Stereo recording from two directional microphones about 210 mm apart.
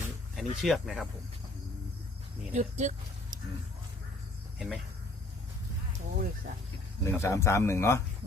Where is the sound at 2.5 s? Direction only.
35° right (ahead or behind).